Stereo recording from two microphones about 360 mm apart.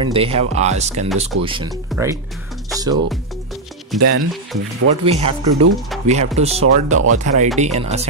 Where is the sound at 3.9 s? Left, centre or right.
Right.